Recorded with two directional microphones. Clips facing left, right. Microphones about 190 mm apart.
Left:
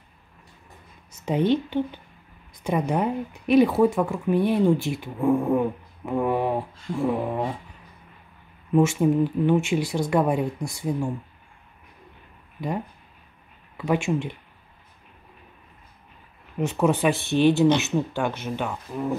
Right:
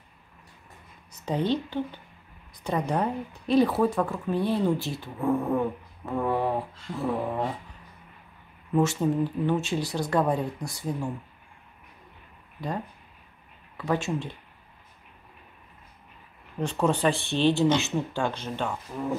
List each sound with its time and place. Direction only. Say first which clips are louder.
1.2 s a woman's voice: left 5 dB; 20° left (ahead or behind)
8.7 s speech: left 4 dB; 15° left (ahead or behind)
12.5 s speech: left 3 dB; 15° left (ahead or behind)
16.5 s speech: left 3 dB; 10° left (ahead or behind)
18.7 s speech: left 3 dB; 5° left (ahead or behind)